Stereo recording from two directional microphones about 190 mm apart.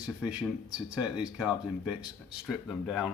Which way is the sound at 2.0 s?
Centre (ahead or behind).